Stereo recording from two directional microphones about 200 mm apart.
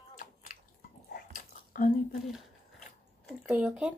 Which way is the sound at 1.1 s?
45° left (ahead or behind).